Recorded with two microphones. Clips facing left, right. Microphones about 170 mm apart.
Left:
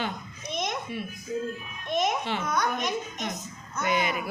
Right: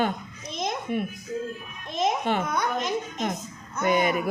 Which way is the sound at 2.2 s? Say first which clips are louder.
Right 5 dB; 50° right (ahead or behind).